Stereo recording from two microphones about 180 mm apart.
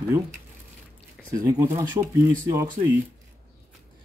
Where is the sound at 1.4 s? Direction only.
15° right (ahead or behind).